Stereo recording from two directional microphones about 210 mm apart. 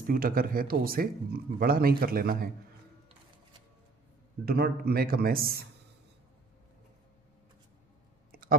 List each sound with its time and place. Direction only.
0.0 s speech: 45° right (ahead or behind)
4.5 s speech: 45° right (ahead or behind)
8.3 s clicking: 45° right (ahead or behind)